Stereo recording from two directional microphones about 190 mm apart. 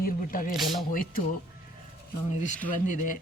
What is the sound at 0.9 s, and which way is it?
Speech, 45° left (ahead or behind).